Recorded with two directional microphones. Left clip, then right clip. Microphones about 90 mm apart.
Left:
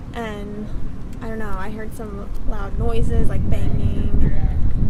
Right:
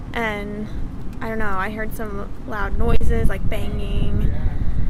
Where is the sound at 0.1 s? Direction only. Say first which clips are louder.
Right 5 dB; 30° right (ahead or behind).